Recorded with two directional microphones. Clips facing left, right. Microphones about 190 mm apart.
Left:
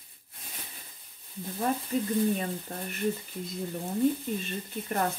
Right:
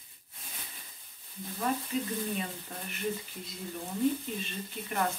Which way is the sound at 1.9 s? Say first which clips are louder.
Left 4 dB; 40° left (ahead or behind).